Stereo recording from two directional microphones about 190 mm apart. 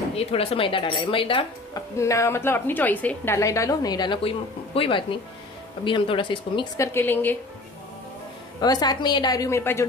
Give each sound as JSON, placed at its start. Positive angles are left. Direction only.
{"t": 0.1, "sound": "speech", "side_deg": 30}
{"t": 2.0, "sound": "a woman's voice", "side_deg": 15}
{"t": 8.5, "sound": "speech", "side_deg": 20}